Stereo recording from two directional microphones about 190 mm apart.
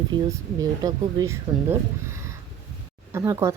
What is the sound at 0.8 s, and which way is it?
Speech, 20° right (ahead or behind).